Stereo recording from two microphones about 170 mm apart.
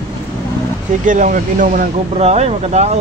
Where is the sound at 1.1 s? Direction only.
50° right (ahead or behind).